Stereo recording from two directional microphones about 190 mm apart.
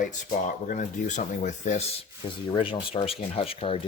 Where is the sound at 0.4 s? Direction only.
40° left (ahead or behind).